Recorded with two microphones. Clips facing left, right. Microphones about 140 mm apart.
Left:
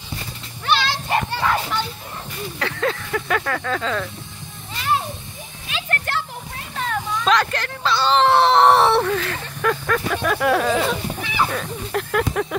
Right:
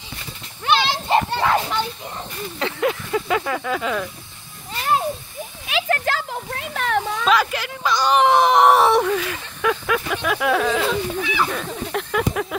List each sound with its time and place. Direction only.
0.7 s children playing: 20° right (ahead or behind)
2.6 s speech: 15° right (ahead or behind)
5.7 s a sound: 90° right; by 7.2 s 70° right (ahead or behind)
7.2 s speech: 5° right (ahead or behind); by 11.5 s 10° left (ahead or behind)
11.5 s speech: centre (ahead or behind)